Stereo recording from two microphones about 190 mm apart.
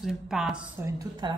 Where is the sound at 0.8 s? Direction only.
20° right (ahead or behind).